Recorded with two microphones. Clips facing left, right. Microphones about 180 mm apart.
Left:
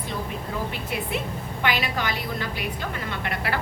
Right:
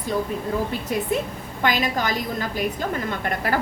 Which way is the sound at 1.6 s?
40° right (ahead or behind).